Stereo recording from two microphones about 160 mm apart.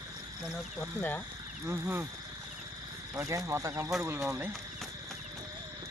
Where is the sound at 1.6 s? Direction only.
15° right (ahead or behind).